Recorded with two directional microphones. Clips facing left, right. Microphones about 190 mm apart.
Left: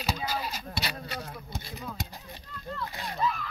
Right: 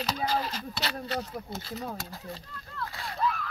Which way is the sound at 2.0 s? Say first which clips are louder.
Right 2 dB; 15° left (ahead or behind).